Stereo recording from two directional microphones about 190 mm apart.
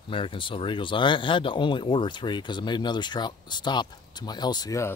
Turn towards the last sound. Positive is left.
turn(degrees=15)  # may be behind; listen again after turning